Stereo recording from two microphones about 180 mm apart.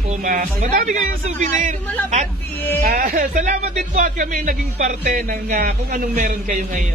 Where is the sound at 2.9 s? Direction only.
50° right (ahead or behind).